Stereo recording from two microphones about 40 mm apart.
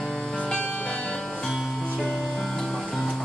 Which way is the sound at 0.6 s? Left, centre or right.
Left.